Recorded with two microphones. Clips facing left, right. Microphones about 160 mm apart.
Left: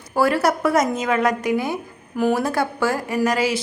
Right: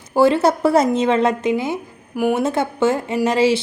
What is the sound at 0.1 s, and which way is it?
A woman's voice, 25° right (ahead or behind).